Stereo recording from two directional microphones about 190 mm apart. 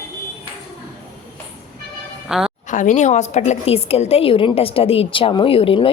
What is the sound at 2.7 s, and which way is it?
A woman's voice, 40° left (ahead or behind).